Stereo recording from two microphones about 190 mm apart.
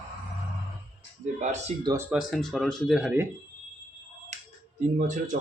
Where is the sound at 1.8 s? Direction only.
15° right (ahead or behind).